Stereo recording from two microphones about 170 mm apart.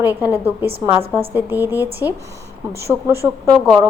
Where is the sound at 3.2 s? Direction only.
20° right (ahead or behind).